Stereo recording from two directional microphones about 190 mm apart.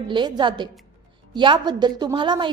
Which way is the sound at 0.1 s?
25° right (ahead or behind).